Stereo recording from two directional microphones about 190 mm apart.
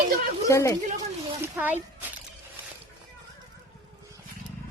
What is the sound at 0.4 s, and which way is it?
Speech, 15° left (ahead or behind).